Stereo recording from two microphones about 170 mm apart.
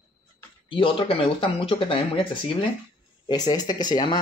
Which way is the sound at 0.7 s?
30° left (ahead or behind).